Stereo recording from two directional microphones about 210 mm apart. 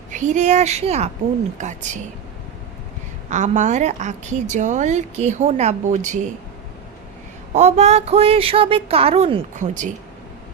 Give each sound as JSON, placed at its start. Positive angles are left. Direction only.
{"t": 0.1, "sound": "a woman's voice", "side_deg": -35}
{"t": 3.2, "sound": "a woman's voice", "side_deg": -35}
{"t": 7.5, "sound": "a woman's voice", "side_deg": -30}